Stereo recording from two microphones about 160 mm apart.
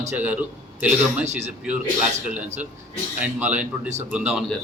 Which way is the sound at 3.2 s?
10° right (ahead or behind).